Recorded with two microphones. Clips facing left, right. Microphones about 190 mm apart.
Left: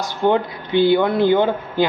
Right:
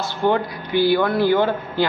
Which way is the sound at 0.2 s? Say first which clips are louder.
Left 2 dB; 20° left (ahead or behind).